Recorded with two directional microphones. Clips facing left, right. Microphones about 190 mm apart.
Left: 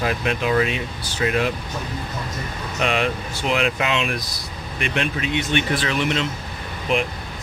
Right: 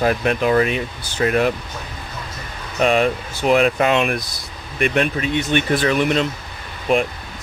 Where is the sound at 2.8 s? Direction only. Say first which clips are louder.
Right 6 dB; 40° right (ahead or behind).